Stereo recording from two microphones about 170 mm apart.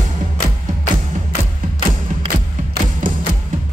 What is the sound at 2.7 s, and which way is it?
Music, 55° right (ahead or behind).